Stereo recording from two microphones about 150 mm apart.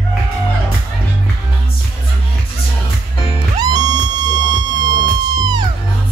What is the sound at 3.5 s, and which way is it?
Music, 25° right (ahead or behind).